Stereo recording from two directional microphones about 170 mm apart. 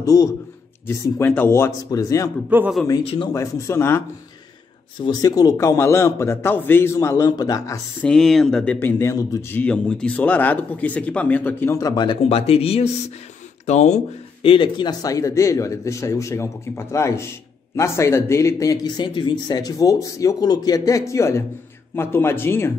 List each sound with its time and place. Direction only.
0.0 s a man's voice: 20° left (ahead or behind)
3.0 s speech: 35° left (ahead or behind)
3.3 s speech: 20° left (ahead or behind)
5.0 s speech: 25° left (ahead or behind)
8.0 s speech: 5° left (ahead or behind)